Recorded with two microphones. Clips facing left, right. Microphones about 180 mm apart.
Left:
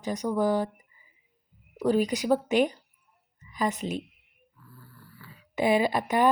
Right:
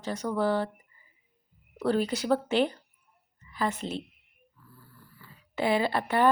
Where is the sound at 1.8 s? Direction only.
15° left (ahead or behind).